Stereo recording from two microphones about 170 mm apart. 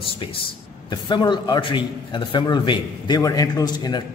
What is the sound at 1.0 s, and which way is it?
A man's voice, 25° left (ahead or behind).